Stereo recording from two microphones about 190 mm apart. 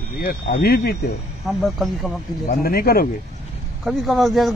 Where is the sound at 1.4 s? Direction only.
Centre (ahead or behind).